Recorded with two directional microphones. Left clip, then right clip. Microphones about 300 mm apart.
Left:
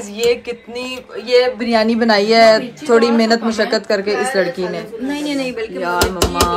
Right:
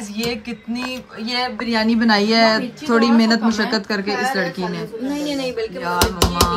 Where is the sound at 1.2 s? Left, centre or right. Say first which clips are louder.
Left 9 dB; centre.